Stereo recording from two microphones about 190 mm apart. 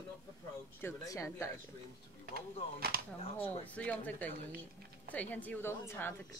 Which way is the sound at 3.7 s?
10° left (ahead or behind).